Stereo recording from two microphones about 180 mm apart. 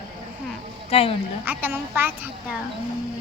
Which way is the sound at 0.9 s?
30° left (ahead or behind).